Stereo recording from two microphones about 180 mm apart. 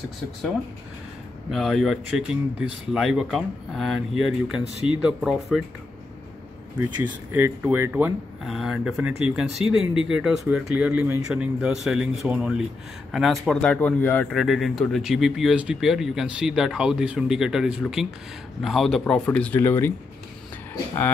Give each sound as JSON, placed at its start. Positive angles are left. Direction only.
{"t": 1.5, "sound": "speech", "side_deg": 0}
{"t": 7.0, "sound": "speech", "side_deg": -10}